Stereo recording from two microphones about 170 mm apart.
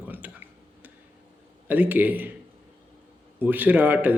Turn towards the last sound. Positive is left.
turn(degrees=-10)  # may be behind; listen again after turning